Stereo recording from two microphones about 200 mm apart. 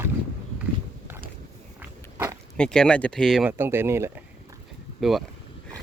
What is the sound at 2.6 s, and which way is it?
Speech, 5° left (ahead or behind).